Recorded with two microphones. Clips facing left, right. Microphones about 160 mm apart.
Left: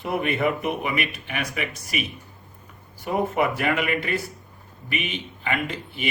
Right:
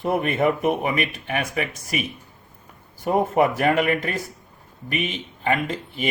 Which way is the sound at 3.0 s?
45° right (ahead or behind).